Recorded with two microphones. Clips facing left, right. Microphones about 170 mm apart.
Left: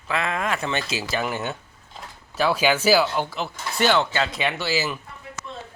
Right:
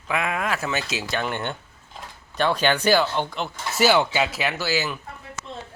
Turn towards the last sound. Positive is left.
turn(degrees=0)  # may be behind; listen again after turning